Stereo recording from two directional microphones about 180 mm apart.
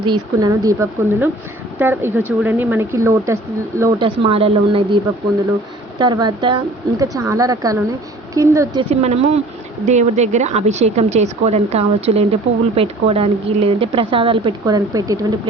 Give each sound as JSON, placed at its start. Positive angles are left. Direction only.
{"t": 0.0, "sound": "a woman's voice", "side_deg": -25}
{"t": 3.9, "sound": "a woman's voice", "side_deg": -30}
{"t": 6.0, "sound": "a woman's voice", "side_deg": -25}
{"t": 8.9, "sound": "a woman's voice", "side_deg": -35}